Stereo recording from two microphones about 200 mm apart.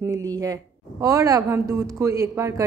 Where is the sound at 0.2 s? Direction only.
20° right (ahead or behind).